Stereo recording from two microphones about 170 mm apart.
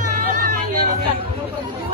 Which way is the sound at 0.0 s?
50° right (ahead or behind).